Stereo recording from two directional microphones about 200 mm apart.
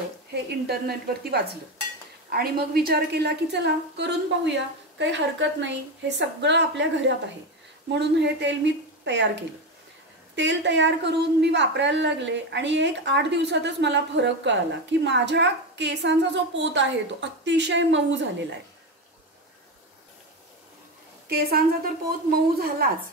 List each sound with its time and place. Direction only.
0.3 s a woman's voice: 55° right (ahead or behind)
21.3 s a woman's voice: 50° right (ahead or behind)